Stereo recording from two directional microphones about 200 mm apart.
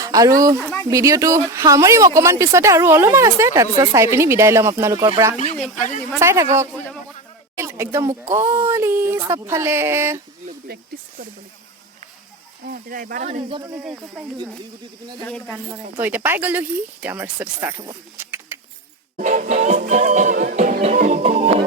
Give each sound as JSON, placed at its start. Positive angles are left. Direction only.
{"t": 0.0, "sound": "speech", "side_deg": -15}
{"t": 0.6, "sound": "speech", "side_deg": 10}
{"t": 0.9, "sound": "speech", "side_deg": -15}
{"t": 12.6, "sound": "speech", "side_deg": -45}
{"t": 13.8, "sound": "speech", "side_deg": -5}
{"t": 15.3, "sound": "speech", "side_deg": 0}
{"t": 15.7, "sound": "speech", "side_deg": -10}
{"t": 19.2, "sound": "music", "side_deg": -35}